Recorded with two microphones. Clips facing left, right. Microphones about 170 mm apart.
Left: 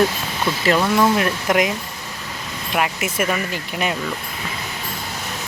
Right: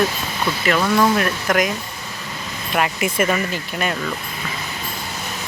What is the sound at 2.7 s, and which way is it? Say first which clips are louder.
Speech: right 2 dB; 5° left (ahead or behind).